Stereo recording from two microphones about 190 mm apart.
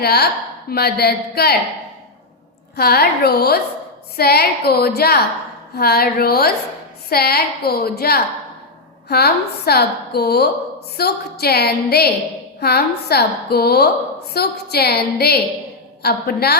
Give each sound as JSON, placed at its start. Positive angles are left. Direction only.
{"t": 0.0, "sound": "a woman's voice", "side_deg": 55}
{"t": 2.7, "sound": "a woman's voice", "side_deg": 55}